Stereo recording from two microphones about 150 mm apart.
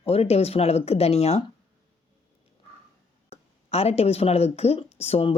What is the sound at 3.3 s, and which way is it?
Speech, 40° left (ahead or behind).